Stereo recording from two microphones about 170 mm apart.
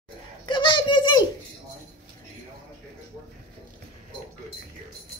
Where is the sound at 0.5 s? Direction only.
30° left (ahead or behind).